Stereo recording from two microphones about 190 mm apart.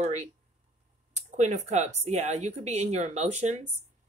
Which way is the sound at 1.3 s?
40° right (ahead or behind).